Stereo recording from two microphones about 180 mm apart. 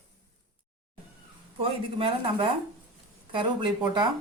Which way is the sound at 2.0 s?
30° right (ahead or behind).